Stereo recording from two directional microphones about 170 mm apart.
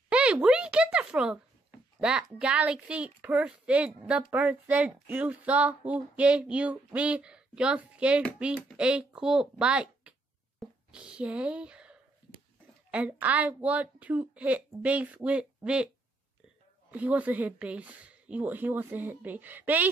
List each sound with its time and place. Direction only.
0.1 s a sound: 5° right (ahead or behind)
2.0 s speech: 5° right (ahead or behind)
16.9 s speech: 10° right (ahead or behind)